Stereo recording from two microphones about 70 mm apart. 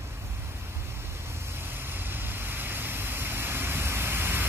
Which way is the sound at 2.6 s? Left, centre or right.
Right.